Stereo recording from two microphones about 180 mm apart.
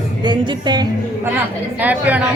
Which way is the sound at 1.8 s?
10° right (ahead or behind).